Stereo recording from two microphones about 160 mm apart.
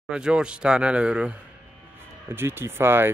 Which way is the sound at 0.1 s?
5° right (ahead or behind).